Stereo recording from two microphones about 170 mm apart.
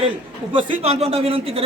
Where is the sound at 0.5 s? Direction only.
35° right (ahead or behind).